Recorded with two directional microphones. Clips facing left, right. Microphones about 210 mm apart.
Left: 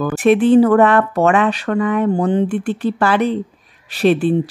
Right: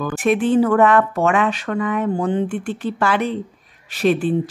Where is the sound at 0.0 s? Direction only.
35° left (ahead or behind).